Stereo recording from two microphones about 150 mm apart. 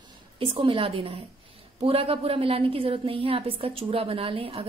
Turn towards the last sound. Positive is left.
turn(degrees=-40)  # may be behind; listen again after turning